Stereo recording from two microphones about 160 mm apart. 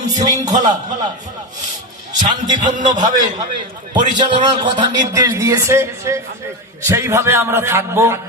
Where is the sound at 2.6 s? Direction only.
50° right (ahead or behind).